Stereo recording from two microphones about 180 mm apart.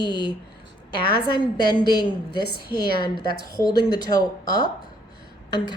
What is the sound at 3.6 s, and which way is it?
Speech, 20° left (ahead or behind).